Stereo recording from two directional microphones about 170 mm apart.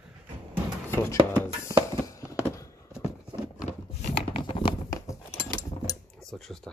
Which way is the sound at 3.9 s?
40° left (ahead or behind).